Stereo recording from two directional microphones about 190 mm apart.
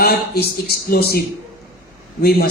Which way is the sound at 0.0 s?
55° left (ahead or behind).